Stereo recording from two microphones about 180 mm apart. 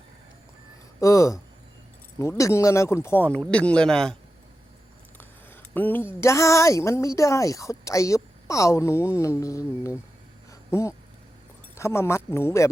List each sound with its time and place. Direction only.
0.9 s a woman's voice: 15° left (ahead or behind)
5.7 s a woman's voice: 10° left (ahead or behind)